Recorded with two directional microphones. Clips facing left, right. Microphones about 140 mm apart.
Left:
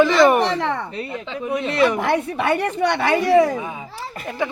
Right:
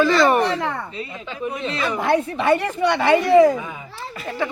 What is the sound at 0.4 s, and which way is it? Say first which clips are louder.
A woman's voice: left 1 dB; 75° left (ahead or behind).